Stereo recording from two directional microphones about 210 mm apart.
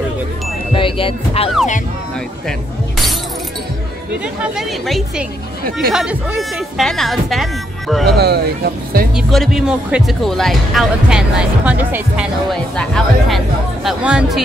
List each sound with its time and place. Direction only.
0.7 s speech: 25° left (ahead or behind)
4.1 s speech: 5° right (ahead or behind)
8.2 s speech: 50° right (ahead or behind)
9.1 s speech: centre (ahead or behind)